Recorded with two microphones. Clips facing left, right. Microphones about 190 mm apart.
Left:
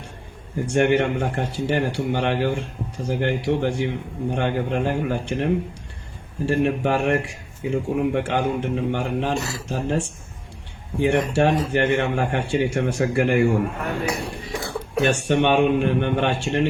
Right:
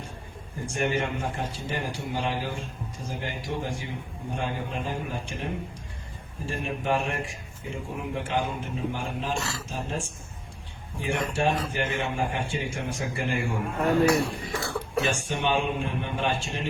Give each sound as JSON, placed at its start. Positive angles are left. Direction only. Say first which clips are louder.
{"t": 0.5, "sound": "speech", "louder": "left 9 dB", "side_deg": 70}
{"t": 9.3, "sound": "speech", "louder": "left 5 dB", "side_deg": 20}
{"t": 9.6, "sound": "speech", "louder": "left 9 dB", "side_deg": 70}
{"t": 15.0, "sound": "speech", "louder": "left 12 dB", "side_deg": 70}